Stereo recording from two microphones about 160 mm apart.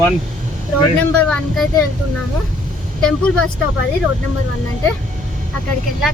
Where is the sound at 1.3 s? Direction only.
5° left (ahead or behind).